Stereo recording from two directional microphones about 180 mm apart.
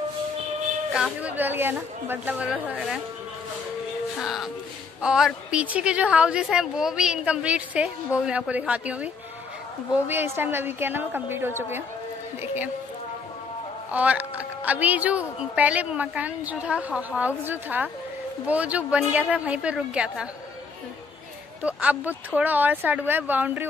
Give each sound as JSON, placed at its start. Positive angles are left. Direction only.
{"t": 0.9, "sound": "a woman's voice", "side_deg": -5}
{"t": 4.2, "sound": "a woman's voice", "side_deg": 0}
{"t": 13.9, "sound": "a woman's voice", "side_deg": -10}
{"t": 21.6, "sound": "a woman's voice", "side_deg": -5}